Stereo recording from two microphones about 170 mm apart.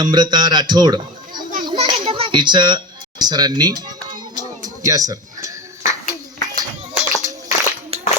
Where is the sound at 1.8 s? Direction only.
30° right (ahead or behind).